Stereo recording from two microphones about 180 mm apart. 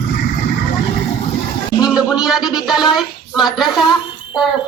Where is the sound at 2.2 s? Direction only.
5° right (ahead or behind).